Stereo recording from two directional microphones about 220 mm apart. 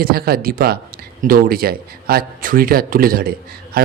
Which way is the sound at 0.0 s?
45° right (ahead or behind).